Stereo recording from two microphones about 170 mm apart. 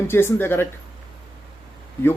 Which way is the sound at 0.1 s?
15° left (ahead or behind).